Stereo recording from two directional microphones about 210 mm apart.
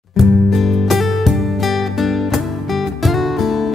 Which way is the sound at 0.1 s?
Centre (ahead or behind).